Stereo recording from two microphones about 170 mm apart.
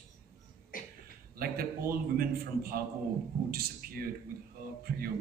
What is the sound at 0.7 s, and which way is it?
Cough, 55° left (ahead or behind).